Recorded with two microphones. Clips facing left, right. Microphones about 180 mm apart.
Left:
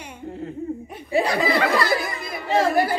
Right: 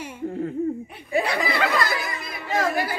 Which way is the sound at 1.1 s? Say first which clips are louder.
Left 3 dB; 35° left (ahead or behind).